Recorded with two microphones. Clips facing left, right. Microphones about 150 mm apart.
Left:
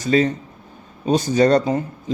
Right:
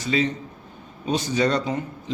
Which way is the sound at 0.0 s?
45° left (ahead or behind).